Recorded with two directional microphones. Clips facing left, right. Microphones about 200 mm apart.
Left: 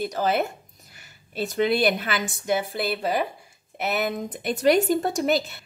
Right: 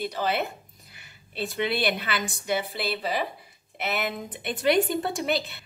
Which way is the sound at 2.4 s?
50° left (ahead or behind).